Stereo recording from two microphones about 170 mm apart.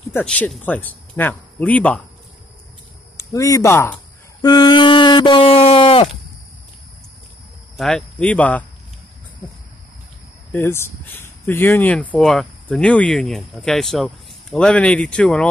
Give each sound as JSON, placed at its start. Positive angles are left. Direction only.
{"t": 0.1, "sound": "speech", "side_deg": 10}
{"t": 3.2, "sound": "a sound", "side_deg": 20}
{"t": 7.7, "sound": "speech", "side_deg": 0}
{"t": 10.5, "sound": "speech", "side_deg": 15}